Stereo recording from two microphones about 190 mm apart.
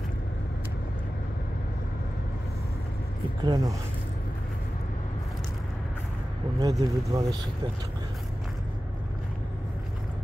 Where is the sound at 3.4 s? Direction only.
20° right (ahead or behind).